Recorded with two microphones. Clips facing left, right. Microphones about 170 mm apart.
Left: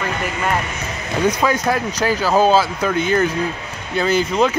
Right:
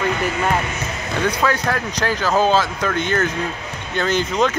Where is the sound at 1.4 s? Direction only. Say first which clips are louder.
Left 2 dB; 10° left (ahead or behind).